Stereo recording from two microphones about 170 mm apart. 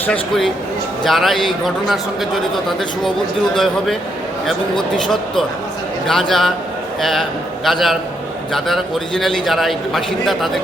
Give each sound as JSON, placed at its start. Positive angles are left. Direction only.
{"t": 0.0, "sound": "a man's voice", "side_deg": 5}